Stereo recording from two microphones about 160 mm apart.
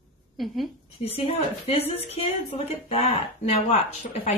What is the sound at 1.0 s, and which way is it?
A woman's voice, 40° left (ahead or behind).